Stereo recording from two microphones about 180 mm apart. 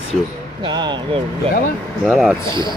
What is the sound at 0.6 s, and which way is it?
Speech, 25° right (ahead or behind).